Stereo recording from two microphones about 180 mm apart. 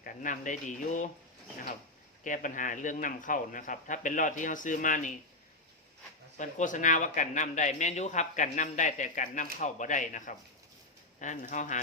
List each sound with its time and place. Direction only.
0.0 s speech: 50° left (ahead or behind)
2.2 s speech: 45° left (ahead or behind)
6.3 s speech: 45° left (ahead or behind)